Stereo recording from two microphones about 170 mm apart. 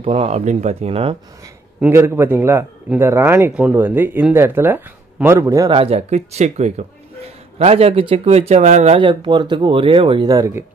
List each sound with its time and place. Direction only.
0.0 s speech: 30° right (ahead or behind)
1.8 s a man's voice: 15° right (ahead or behind)
5.7 s speech: 35° right (ahead or behind)
9.0 s speech: 30° right (ahead or behind)